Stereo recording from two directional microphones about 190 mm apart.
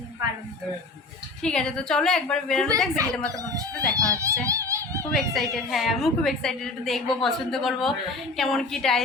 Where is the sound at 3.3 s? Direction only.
20° right (ahead or behind).